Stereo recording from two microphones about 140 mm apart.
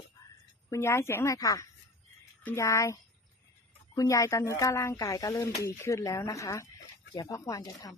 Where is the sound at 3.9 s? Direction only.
25° left (ahead or behind).